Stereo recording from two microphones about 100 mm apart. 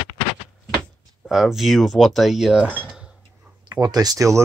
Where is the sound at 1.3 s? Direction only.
5° right (ahead or behind).